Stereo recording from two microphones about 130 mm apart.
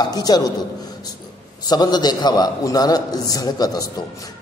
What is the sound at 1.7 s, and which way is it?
A man's voice, 30° left (ahead or behind).